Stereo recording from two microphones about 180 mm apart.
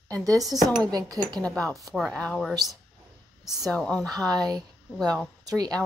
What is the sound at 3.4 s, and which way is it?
Speech, centre (ahead or behind).